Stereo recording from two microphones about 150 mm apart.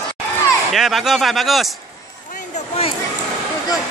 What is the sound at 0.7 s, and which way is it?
Speech, centre (ahead or behind).